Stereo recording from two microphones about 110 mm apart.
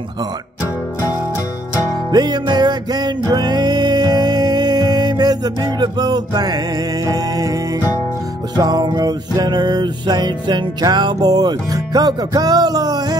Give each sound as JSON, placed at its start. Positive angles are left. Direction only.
{"t": 2.0, "sound": "music", "side_deg": -40}